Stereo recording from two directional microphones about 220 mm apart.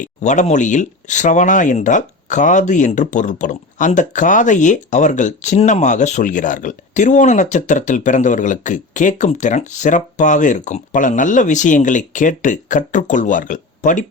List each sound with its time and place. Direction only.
0.0 s speech: 35° left (ahead or behind)